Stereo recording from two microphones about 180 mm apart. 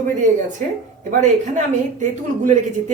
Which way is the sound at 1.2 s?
45° right (ahead or behind).